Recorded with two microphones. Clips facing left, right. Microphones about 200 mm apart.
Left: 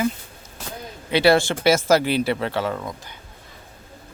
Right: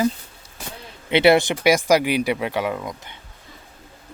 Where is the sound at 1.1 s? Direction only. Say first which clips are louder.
Right 2 dB; 20° right (ahead or behind).